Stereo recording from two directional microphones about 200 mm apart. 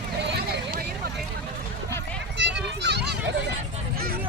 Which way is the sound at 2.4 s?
60° right (ahead or behind).